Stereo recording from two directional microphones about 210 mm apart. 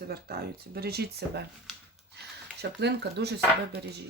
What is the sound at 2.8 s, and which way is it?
Speech, 50° right (ahead or behind).